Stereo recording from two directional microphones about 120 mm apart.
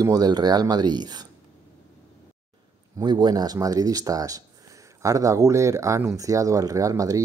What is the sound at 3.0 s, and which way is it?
Speech, 40° right (ahead or behind).